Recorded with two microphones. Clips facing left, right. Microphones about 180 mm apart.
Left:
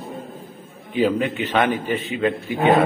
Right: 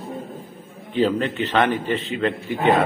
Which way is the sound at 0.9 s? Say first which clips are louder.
Left 1 dB; 10° left (ahead or behind).